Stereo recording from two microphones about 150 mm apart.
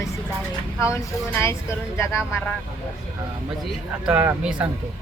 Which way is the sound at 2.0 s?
20° left (ahead or behind).